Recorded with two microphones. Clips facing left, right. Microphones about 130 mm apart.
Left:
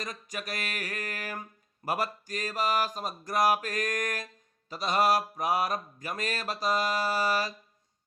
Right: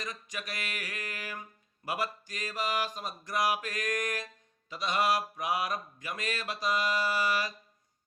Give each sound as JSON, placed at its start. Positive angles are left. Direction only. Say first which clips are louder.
{"t": 0.0, "sound": "mantra", "louder": "left 2 dB", "side_deg": 40}